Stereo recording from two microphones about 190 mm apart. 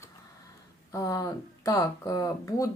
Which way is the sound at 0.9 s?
15° left (ahead or behind).